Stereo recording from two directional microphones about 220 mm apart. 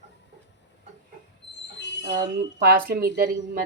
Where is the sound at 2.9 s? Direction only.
40° right (ahead or behind).